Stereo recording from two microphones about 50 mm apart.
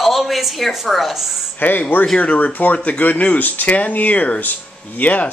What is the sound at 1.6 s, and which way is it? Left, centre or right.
Speech, left.